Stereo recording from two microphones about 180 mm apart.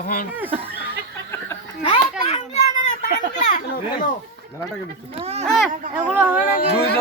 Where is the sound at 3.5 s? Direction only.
50° left (ahead or behind).